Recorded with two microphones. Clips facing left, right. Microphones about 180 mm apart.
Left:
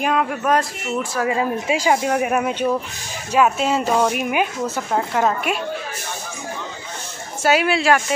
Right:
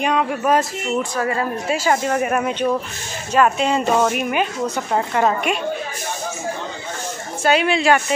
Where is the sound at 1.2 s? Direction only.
10° left (ahead or behind).